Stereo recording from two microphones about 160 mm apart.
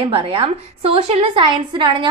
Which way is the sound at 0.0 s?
35° right (ahead or behind).